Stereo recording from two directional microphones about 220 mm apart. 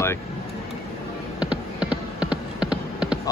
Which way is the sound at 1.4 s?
5° right (ahead or behind).